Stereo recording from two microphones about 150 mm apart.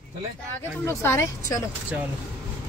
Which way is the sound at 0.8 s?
15° left (ahead or behind).